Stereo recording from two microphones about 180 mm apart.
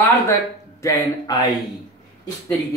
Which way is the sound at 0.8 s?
20° left (ahead or behind).